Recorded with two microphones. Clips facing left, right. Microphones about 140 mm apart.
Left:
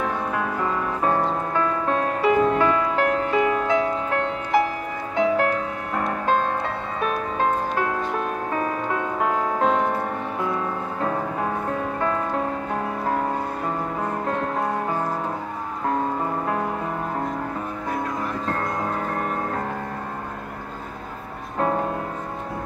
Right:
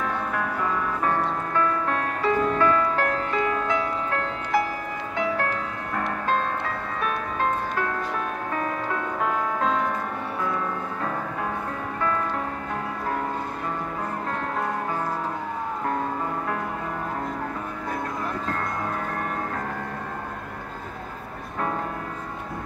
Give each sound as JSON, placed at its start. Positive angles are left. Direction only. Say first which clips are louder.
{"t": 0.0, "sound": "music", "louder": "left 2 dB", "side_deg": 20}
{"t": 8.5, "sound": "music", "louder": "left 2 dB", "side_deg": 20}
{"t": 12.0, "sound": "music", "louder": "even", "side_deg": 30}
{"t": 21.5, "sound": "music", "louder": "left 5 dB", "side_deg": 35}